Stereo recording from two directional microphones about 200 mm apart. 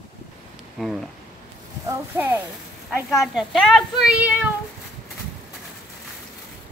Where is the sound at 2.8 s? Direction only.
Centre (ahead or behind).